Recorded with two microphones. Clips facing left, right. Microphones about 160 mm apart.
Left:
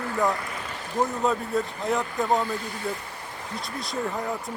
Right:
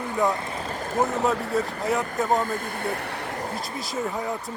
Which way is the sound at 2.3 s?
45° right (ahead or behind).